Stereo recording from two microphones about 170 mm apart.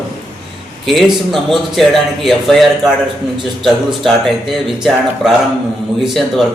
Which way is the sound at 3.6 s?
Centre (ahead or behind).